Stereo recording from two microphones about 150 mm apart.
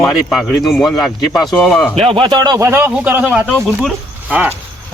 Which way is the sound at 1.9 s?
40° right (ahead or behind).